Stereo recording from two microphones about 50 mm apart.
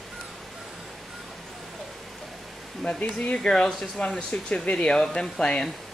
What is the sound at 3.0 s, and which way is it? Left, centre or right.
Speech, left.